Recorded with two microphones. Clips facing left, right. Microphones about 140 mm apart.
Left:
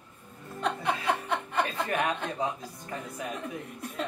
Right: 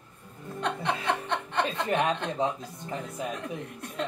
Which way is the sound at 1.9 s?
25° right (ahead or behind).